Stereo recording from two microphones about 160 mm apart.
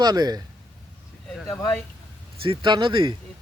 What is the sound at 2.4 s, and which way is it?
Speech, 30° right (ahead or behind).